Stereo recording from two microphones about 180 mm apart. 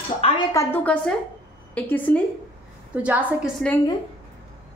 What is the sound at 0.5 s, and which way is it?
A woman's voice, 10° left (ahead or behind).